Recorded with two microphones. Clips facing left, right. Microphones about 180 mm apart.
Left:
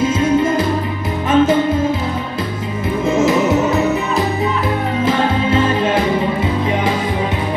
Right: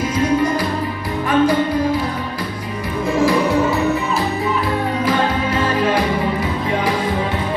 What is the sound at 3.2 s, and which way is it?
Music, 20° left (ahead or behind).